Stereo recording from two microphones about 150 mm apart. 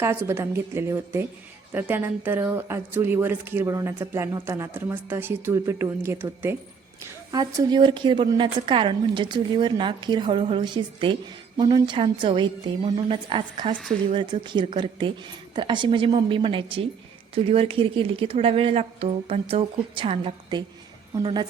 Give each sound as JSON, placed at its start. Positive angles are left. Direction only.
{"t": 0.0, "sound": "a woman's voice", "side_deg": -15}